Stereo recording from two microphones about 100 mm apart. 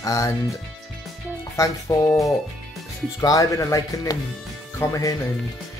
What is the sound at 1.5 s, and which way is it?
Speech, 35° left (ahead or behind).